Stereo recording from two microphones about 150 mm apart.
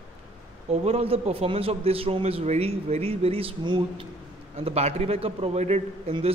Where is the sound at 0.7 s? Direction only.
40° right (ahead or behind).